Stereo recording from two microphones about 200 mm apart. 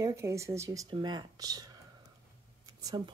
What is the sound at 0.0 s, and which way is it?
Speech, 15° right (ahead or behind).